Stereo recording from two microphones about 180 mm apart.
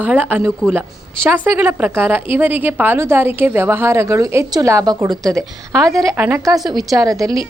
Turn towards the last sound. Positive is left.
turn(degrees=-20)  # may be behind; listen again after turning